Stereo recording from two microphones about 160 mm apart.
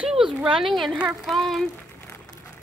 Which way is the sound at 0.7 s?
5° right (ahead or behind).